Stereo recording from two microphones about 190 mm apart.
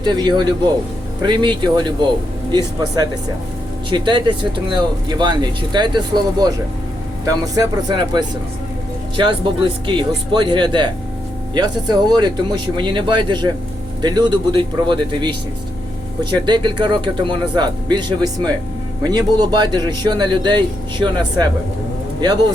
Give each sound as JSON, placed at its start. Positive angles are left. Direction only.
{"t": 0.0, "sound": "a man's voice", "side_deg": -20}
{"t": 7.3, "sound": "a man's voice", "side_deg": -20}
{"t": 9.8, "sound": "a man's voice", "side_deg": -25}
{"t": 16.5, "sound": "a man's voice", "side_deg": -25}